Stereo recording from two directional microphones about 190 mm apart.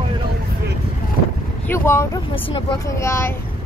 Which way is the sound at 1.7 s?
10° left (ahead or behind).